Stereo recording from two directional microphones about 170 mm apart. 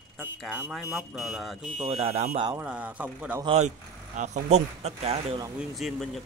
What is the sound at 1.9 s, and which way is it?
Speech, 35° right (ahead or behind).